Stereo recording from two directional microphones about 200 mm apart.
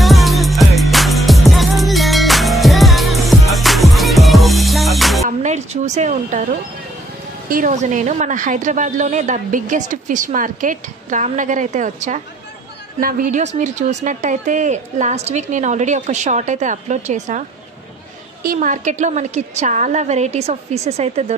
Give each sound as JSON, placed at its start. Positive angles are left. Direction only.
{"t": 0.0, "sound": "music", "side_deg": 0}
{"t": 5.4, "sound": "a sound", "side_deg": -35}
{"t": 7.4, "sound": "a woman's voice", "side_deg": -45}